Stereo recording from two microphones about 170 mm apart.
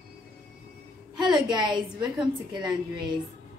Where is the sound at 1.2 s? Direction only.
25° right (ahead or behind).